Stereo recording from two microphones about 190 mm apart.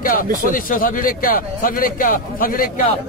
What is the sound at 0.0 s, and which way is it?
Speech, 45° left (ahead or behind).